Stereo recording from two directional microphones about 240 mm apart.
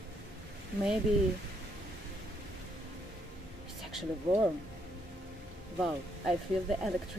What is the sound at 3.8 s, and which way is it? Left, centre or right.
Speech, centre.